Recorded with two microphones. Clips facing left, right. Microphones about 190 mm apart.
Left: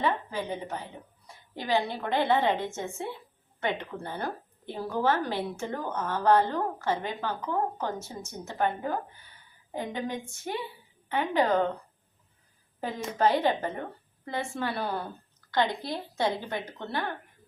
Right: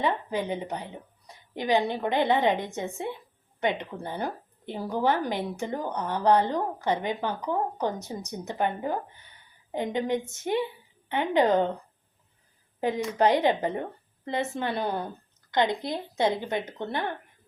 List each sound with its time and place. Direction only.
0.0 s a woman's voice: 20° right (ahead or behind)
12.8 s a woman's voice: 15° right (ahead or behind)